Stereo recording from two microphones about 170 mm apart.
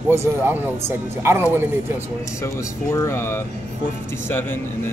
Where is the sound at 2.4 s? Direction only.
15° left (ahead or behind).